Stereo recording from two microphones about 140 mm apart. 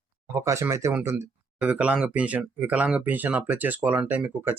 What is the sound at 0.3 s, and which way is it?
Speech, 20° right (ahead or behind).